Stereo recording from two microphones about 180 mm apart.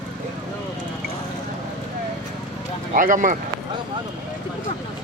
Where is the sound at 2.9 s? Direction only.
45° right (ahead or behind).